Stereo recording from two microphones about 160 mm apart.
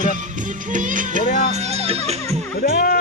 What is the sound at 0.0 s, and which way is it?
Music, 50° right (ahead or behind).